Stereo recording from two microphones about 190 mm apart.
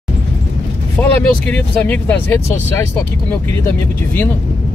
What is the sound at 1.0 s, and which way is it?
Vehicle, 10° left (ahead or behind).